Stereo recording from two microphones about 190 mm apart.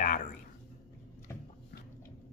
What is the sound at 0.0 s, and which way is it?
Whispering, 45° left (ahead or behind).